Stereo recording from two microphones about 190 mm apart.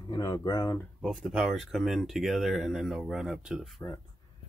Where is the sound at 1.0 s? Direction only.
Centre (ahead or behind).